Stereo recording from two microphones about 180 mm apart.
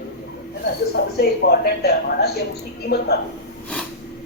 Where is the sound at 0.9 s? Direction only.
65° left (ahead or behind).